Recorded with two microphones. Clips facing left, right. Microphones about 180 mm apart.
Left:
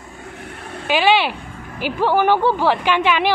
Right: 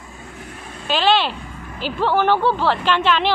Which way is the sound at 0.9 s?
10° left (ahead or behind).